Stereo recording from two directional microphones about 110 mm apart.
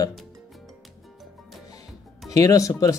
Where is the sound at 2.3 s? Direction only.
35° left (ahead or behind).